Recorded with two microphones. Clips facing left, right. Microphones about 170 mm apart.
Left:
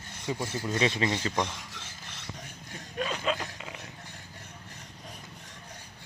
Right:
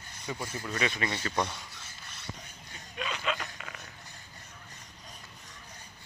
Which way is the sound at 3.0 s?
40° left (ahead or behind).